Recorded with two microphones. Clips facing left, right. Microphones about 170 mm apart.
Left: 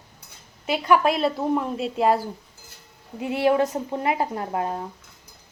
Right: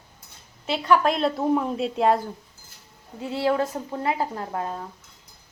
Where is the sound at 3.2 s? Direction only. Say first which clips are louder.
Left 3 dB; 15° left (ahead or behind).